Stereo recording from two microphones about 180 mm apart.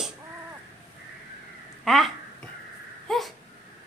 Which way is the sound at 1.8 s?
Centre (ahead or behind).